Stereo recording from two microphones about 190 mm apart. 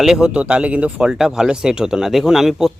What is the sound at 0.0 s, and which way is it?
A man's voice, 5° right (ahead or behind).